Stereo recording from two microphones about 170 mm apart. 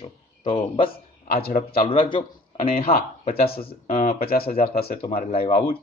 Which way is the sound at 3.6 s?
50° left (ahead or behind).